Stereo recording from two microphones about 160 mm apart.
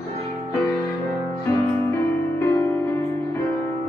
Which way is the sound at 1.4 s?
15° left (ahead or behind).